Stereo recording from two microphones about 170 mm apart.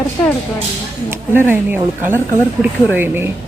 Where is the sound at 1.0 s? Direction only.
15° right (ahead or behind).